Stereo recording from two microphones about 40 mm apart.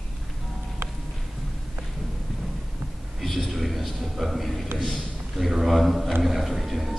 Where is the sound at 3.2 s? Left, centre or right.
Centre.